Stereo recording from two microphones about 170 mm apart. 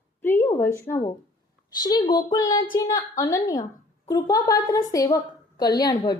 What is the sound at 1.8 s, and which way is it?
A woman's voice, 25° left (ahead or behind).